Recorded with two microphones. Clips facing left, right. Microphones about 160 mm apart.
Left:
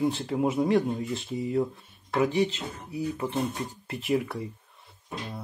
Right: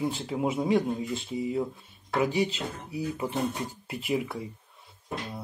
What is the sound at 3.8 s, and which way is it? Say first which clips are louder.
Speech: left 3 dB; 5° right (ahead or behind).